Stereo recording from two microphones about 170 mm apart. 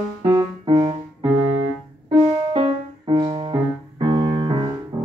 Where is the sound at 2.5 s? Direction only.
25° right (ahead or behind).